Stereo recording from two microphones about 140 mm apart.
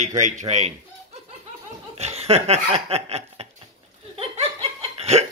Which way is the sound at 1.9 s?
50° right (ahead or behind).